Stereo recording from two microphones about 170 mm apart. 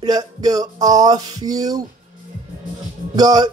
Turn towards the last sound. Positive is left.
turn(degrees=-20)  # may be behind; listen again after turning